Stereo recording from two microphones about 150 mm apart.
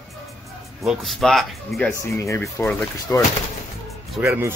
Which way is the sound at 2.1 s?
20° left (ahead or behind).